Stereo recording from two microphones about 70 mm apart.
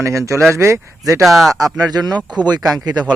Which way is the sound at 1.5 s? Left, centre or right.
Right.